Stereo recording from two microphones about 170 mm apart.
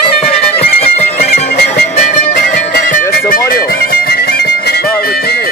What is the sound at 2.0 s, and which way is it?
Music, 50° left (ahead or behind).